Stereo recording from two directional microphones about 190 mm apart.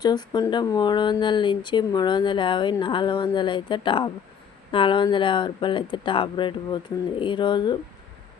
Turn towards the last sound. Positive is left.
turn(degrees=25)  # may be behind; listen again after turning